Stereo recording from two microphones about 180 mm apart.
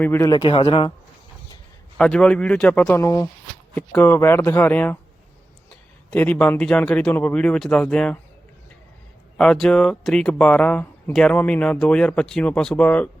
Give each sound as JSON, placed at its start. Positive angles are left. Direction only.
{"t": 0.0, "sound": "a man's voice", "side_deg": 15}
{"t": 0.3, "sound": "a man's voice", "side_deg": 30}
{"t": 2.0, "sound": "a man's voice", "side_deg": 5}
{"t": 6.1, "sound": "speech", "side_deg": 10}
{"t": 9.4, "sound": "speech", "side_deg": 5}